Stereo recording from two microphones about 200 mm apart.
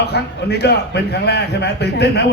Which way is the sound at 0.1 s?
55° left (ahead or behind).